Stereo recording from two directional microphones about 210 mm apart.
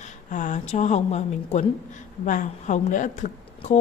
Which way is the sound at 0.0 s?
35° left (ahead or behind).